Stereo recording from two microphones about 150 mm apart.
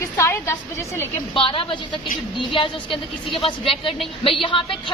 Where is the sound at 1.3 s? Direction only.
35° left (ahead or behind).